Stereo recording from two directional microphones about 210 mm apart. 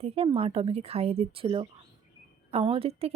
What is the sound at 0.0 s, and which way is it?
A woman's voice, 25° right (ahead or behind).